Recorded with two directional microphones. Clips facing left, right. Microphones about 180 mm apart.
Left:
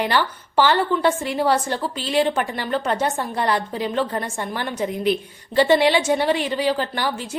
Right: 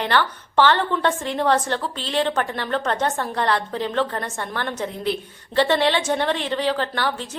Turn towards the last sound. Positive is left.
turn(degrees=10)  # may be behind; listen again after turning